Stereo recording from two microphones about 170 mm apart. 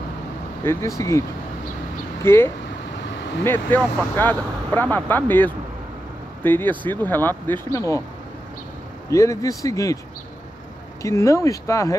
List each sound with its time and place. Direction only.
0.7 s speech: 20° left (ahead or behind)
2.2 s speech: 15° left (ahead or behind)
9.1 s speech: 20° left (ahead or behind)
11.0 s speech: 20° left (ahead or behind)